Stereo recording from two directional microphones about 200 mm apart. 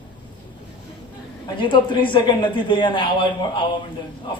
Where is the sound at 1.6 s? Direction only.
25° left (ahead or behind).